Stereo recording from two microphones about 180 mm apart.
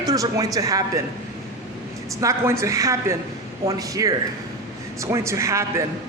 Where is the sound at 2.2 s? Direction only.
15° right (ahead or behind).